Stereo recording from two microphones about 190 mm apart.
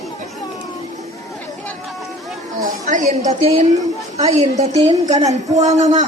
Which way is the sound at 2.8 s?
40° right (ahead or behind).